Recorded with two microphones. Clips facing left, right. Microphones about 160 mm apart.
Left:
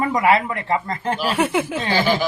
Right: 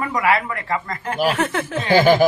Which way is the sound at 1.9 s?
50° right (ahead or behind).